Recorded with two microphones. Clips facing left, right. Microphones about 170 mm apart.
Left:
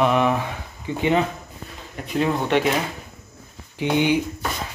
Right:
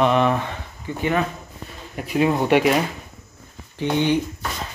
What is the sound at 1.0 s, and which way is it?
Speech, 20° left (ahead or behind).